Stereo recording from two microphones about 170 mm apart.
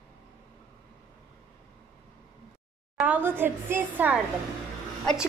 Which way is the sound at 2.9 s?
10° right (ahead or behind).